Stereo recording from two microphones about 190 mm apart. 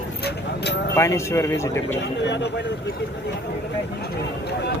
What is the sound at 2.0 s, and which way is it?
Speech, 65° left (ahead or behind).